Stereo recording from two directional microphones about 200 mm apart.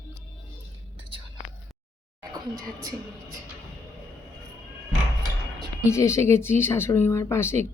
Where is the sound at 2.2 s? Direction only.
20° right (ahead or behind).